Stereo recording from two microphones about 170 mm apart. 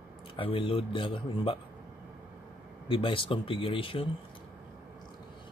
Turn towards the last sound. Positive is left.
turn(degrees=30)  # may be behind; listen again after turning